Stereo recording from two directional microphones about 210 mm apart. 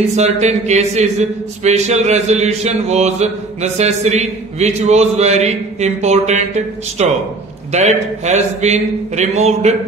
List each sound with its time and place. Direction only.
0.1 s a man's voice: 30° right (ahead or behind)